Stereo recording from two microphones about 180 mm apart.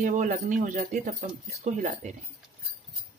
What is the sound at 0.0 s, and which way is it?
Speech, 45° right (ahead or behind).